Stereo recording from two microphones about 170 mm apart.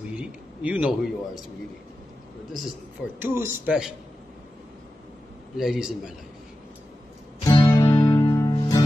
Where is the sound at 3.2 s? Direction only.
15° right (ahead or behind).